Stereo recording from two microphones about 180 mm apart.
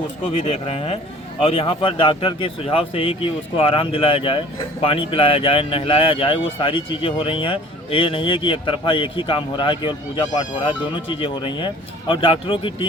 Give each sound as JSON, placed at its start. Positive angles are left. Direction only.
{"t": 0.3, "sound": "speech", "side_deg": 30}